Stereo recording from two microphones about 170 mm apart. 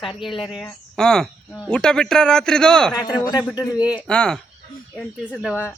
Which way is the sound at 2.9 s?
25° left (ahead or behind).